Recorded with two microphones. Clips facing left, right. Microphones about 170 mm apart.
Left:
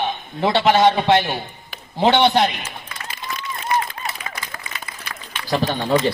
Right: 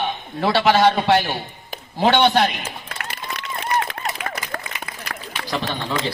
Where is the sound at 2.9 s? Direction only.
70° right (ahead or behind).